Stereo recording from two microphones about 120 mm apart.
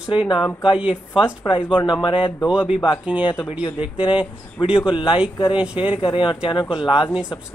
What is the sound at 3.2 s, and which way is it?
Speech, 40° left (ahead or behind).